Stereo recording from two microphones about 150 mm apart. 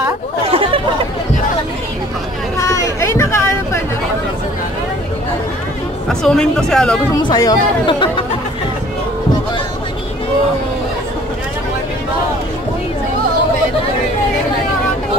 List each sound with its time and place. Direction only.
0.5 s chatter: 35° right (ahead or behind)
2.6 s a sound: 20° left (ahead or behind)
6.0 s speech: 5° left (ahead or behind)
7.2 s speech: 25° left (ahead or behind)